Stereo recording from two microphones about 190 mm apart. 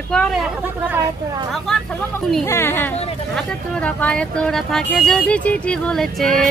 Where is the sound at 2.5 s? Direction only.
15° left (ahead or behind).